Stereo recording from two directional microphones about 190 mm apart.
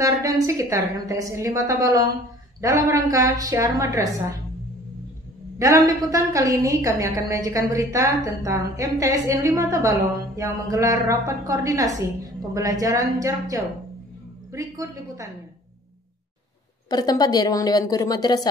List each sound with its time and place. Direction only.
0.0 s a woman's voice: 15° right (ahead or behind)
5.6 s a woman's voice: 15° right (ahead or behind)
16.9 s a woman's voice: 20° left (ahead or behind)